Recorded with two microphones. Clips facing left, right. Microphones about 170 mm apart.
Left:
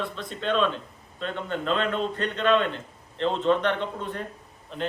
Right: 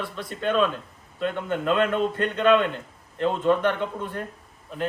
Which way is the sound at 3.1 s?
10° right (ahead or behind).